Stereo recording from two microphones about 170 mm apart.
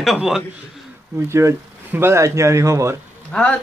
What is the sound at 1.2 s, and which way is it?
Speech, 15° right (ahead or behind).